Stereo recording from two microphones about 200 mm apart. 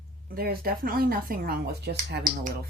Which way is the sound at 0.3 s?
50° right (ahead or behind).